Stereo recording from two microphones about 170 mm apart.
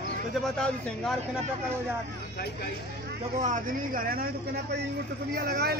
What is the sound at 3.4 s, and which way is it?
Speech, 50° right (ahead or behind).